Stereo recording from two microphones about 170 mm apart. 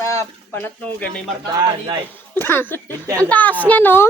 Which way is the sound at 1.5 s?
25° right (ahead or behind).